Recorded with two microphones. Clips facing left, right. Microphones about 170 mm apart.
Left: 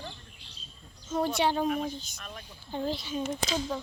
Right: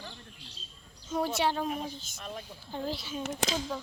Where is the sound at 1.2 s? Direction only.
5° right (ahead or behind).